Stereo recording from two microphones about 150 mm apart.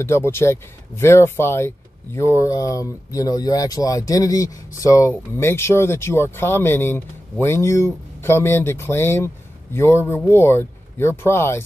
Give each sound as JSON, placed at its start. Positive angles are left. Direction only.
{"t": 0.0, "sound": "speech", "side_deg": 15}